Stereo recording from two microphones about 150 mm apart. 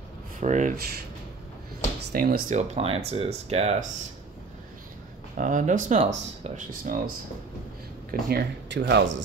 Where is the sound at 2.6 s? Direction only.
40° right (ahead or behind).